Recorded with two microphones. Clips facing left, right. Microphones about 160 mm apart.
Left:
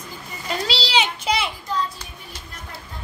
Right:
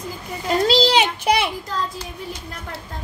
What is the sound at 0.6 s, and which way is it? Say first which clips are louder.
Speech: right 7 dB; 50° right (ahead or behind).